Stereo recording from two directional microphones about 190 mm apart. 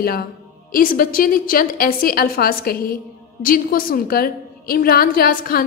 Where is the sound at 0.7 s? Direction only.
50° left (ahead or behind).